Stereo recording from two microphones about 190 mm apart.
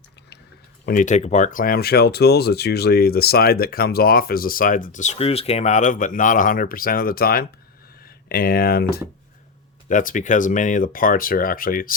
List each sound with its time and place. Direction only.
0.9 s speech: 45° left (ahead or behind)
9.9 s speech: 45° left (ahead or behind)